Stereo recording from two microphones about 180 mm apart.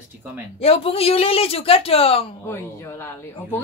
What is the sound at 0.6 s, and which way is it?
A woman's voice, 35° left (ahead or behind).